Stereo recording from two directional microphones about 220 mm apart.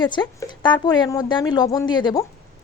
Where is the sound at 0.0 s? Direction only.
20° left (ahead or behind).